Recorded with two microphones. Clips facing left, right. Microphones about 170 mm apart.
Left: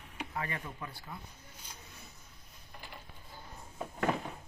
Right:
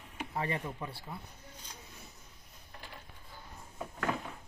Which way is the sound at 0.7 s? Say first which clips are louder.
Right 3 dB; 25° right (ahead or behind).